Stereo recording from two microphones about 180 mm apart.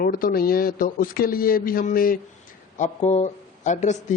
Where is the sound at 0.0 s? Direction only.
55° left (ahead or behind).